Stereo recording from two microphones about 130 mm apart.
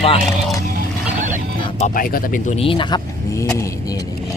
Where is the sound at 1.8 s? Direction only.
90° left.